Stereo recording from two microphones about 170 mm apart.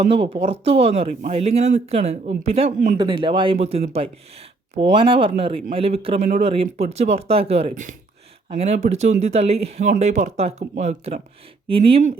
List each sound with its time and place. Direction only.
0.1 s speech: 35° right (ahead or behind)
3.0 s speech: 30° right (ahead or behind)